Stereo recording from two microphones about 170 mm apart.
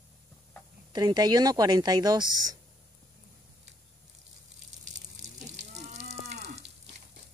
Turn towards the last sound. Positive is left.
turn(degrees=-40)  # may be behind; listen again after turning